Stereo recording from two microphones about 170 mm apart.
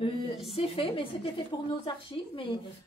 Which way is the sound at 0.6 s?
35° left (ahead or behind).